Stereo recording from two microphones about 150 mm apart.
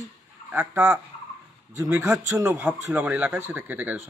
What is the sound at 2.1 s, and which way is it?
A man's voice, 5° right (ahead or behind).